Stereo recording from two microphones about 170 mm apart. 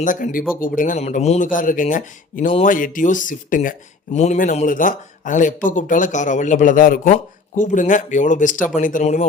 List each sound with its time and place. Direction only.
0.0 s speech: 50° left (ahead or behind)